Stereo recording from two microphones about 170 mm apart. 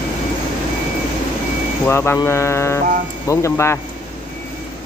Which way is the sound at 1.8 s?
15° left (ahead or behind).